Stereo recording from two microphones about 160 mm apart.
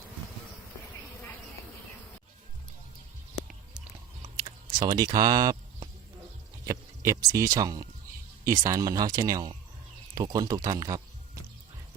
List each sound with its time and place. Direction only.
4.8 s speech: 25° right (ahead or behind)